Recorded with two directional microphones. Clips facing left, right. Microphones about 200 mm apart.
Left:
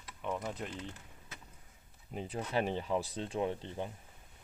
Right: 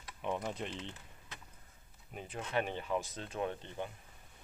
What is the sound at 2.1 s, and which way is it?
Speech, 35° left (ahead or behind).